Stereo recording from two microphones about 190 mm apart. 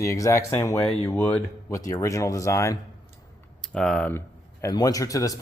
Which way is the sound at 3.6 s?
5° left (ahead or behind).